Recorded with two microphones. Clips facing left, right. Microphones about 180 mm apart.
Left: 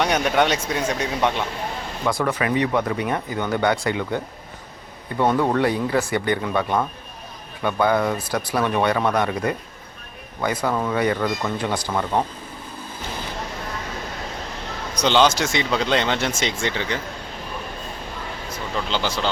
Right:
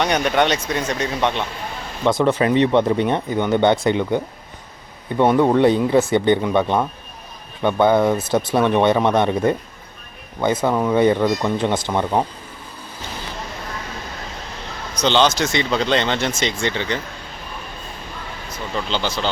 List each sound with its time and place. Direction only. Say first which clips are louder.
0.0 s speech: right 1 dB; 5° left (ahead or behind)
2.0 s speech: right 6 dB; 25° right (ahead or behind)
14.9 s speech: right 1 dB; 10° left (ahead or behind)
18.9 s speech: right 1 dB; 10° left (ahead or behind)